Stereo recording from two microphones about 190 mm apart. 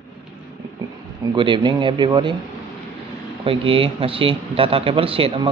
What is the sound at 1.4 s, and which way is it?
Speech, 25° right (ahead or behind).